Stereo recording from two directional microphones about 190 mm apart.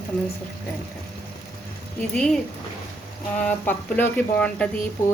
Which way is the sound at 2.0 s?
5° left (ahead or behind).